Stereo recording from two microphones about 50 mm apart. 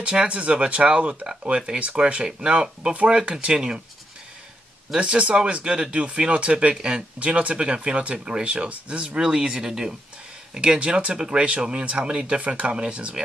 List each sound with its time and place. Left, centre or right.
0.0 s speech: right
2.9 s speech: right
4.9 s speech: right